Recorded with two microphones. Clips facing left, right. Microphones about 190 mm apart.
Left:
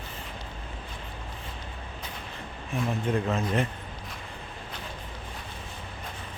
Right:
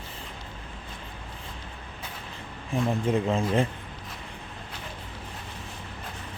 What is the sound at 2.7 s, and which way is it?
Speech, 30° right (ahead or behind).